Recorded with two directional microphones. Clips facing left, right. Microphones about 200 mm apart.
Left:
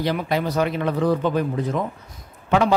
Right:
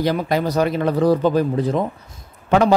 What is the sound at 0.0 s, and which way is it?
Speech, 40° right (ahead or behind).